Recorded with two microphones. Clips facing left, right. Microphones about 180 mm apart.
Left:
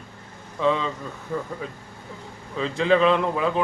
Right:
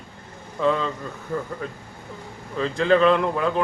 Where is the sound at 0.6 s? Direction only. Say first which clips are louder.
Right 1 dB; centre (ahead or behind).